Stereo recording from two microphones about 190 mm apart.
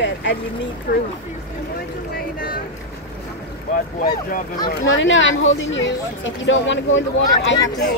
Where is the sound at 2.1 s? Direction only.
50° left (ahead or behind).